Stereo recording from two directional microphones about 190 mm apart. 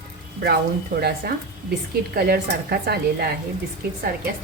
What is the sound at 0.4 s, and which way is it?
A woman's voice, 55° right (ahead or behind).